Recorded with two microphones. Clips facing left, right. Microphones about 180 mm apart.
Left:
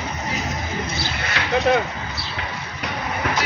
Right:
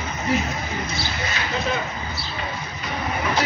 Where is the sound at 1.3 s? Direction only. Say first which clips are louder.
Left 9 dB; 65° left (ahead or behind).